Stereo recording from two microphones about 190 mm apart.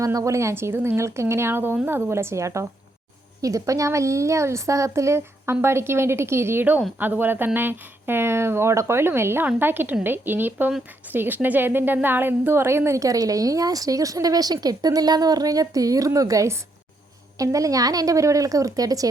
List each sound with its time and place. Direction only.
0.0 s a woman's voice: 15° right (ahead or behind)